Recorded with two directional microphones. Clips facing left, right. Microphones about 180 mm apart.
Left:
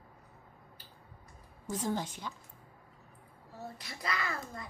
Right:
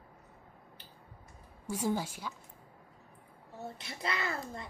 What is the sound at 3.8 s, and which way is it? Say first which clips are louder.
Speech: right 1 dB; 25° right (ahead or behind).